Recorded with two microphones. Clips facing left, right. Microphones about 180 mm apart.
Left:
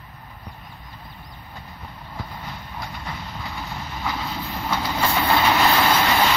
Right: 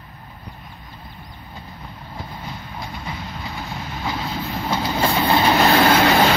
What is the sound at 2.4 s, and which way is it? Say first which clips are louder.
Vehicle: right 2 dB; 15° right (ahead or behind).